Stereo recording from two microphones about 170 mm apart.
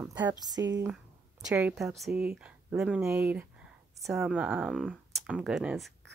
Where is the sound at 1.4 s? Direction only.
5° right (ahead or behind).